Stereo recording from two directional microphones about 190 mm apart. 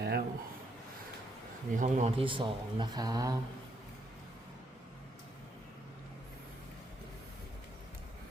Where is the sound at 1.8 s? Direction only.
35° right (ahead or behind); by 3.3 s 20° right (ahead or behind).